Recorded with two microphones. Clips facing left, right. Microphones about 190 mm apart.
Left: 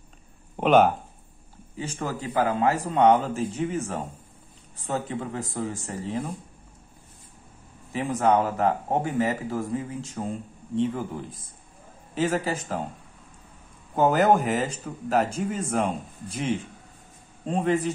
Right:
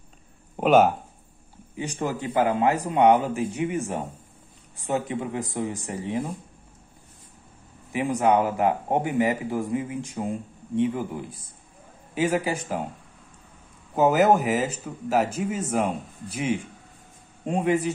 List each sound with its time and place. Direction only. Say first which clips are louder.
0.6 s speech: right 1 dB; 5° right (ahead or behind)
1.8 s speech: right 3 dB; 20° right (ahead or behind)
7.9 s speech: right 1 dB; 15° right (ahead or behind)
13.9 s speech: right 1 dB; 5° right (ahead or behind)